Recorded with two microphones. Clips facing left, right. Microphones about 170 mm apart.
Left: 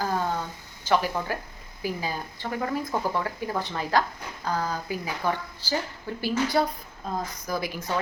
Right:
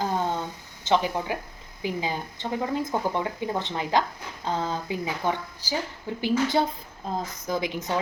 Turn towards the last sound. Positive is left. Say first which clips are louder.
# right 2 dB
turn(degrees=-20)  # may be behind; listen again after turning